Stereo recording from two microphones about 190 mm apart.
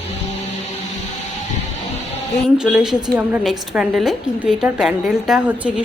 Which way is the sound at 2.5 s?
5° right (ahead or behind).